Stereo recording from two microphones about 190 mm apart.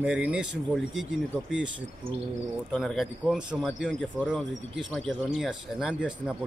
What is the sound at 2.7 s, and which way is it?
Speech, centre (ahead or behind).